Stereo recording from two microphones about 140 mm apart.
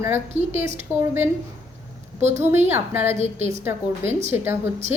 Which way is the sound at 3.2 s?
50° right (ahead or behind).